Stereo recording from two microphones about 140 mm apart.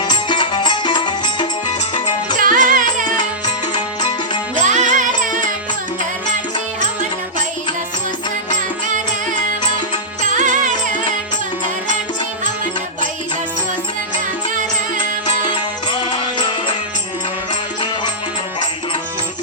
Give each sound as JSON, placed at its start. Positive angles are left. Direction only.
{"t": 0.0, "sound": "music", "side_deg": 30}
{"t": 2.4, "sound": "music", "side_deg": -75}
{"t": 4.6, "sound": "music", "side_deg": -60}
{"t": 10.2, "sound": "music", "side_deg": -65}
{"t": 15.4, "sound": "music", "side_deg": 30}